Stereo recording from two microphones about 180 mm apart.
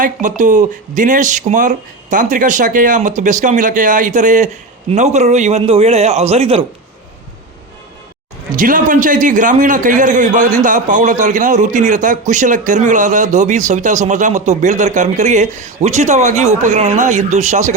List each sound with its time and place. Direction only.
0.0 s a man's voice: 45° right (ahead or behind)
8.5 s a man's voice: 50° right (ahead or behind)